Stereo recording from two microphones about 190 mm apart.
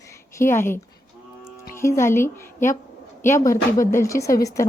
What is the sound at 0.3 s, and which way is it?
Speech, 15° left (ahead or behind).